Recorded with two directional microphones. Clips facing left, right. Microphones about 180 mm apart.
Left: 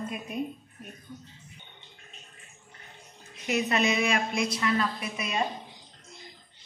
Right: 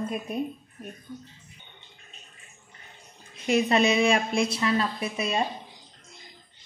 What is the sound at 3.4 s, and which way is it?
A woman's voice, 30° right (ahead or behind).